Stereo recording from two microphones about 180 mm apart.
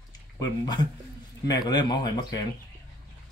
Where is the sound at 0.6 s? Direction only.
25° left (ahead or behind).